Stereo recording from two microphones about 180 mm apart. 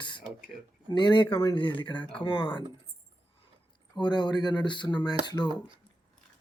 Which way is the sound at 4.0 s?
25° left (ahead or behind).